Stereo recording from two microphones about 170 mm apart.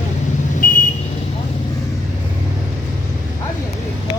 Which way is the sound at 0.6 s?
50° left (ahead or behind).